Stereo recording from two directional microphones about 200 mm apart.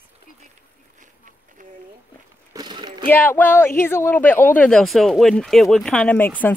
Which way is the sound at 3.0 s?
10° left (ahead or behind).